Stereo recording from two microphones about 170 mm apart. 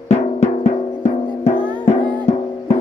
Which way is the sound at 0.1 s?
40° left (ahead or behind).